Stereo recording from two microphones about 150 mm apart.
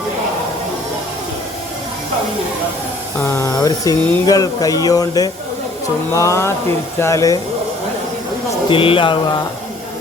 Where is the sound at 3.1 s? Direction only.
15° left (ahead or behind).